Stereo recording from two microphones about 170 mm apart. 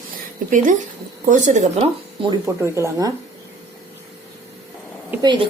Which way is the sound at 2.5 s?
15° right (ahead or behind).